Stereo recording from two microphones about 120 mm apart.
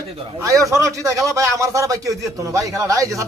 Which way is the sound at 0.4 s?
25° right (ahead or behind).